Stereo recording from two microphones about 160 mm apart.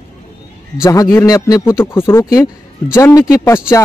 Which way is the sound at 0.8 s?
20° left (ahead or behind).